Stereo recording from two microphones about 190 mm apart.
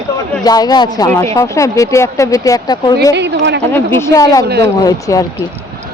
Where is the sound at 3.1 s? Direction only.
65° right (ahead or behind).